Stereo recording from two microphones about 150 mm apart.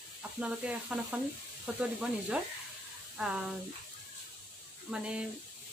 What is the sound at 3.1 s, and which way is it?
Speech, 5° right (ahead or behind).